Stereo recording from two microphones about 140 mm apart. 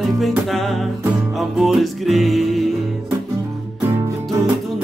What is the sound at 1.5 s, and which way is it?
Music, centre (ahead or behind).